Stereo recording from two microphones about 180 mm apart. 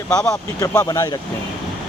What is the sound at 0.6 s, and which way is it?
Speech, 20° left (ahead or behind).